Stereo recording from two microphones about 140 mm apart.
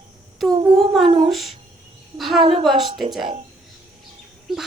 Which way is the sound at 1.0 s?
40° right (ahead or behind).